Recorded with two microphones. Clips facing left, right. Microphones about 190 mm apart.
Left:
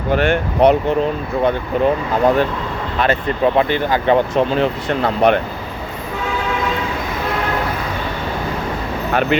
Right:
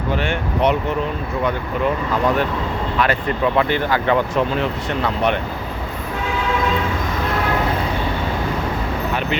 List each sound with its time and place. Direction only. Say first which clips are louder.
0.1 s speech: left 7 dB; 55° left (ahead or behind)
0.6 s speech: left 6 dB; 35° left (ahead or behind)
5.0 s speech: left 6 dB; 40° left (ahead or behind)
9.3 s speech: left 8 dB; 55° left (ahead or behind)